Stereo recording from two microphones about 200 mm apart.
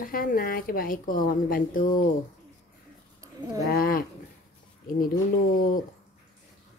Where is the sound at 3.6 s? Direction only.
45° left (ahead or behind).